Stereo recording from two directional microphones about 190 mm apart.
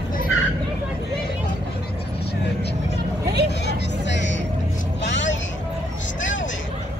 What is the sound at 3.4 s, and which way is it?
Vehicle, 65° left (ahead or behind).